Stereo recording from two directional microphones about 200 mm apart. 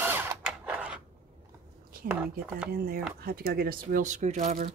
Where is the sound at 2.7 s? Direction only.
50° right (ahead or behind).